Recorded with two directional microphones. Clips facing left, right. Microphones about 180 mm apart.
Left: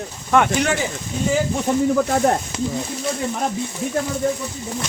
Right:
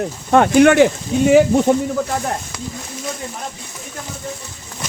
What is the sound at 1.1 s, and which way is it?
Speech, 85° right.